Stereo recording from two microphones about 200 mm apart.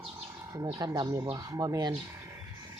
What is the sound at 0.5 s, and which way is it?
Speech, 20° right (ahead or behind).